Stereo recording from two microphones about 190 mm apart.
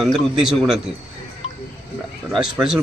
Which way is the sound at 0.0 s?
Centre (ahead or behind).